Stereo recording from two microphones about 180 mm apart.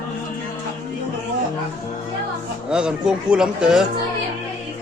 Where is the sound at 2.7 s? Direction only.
5° right (ahead or behind).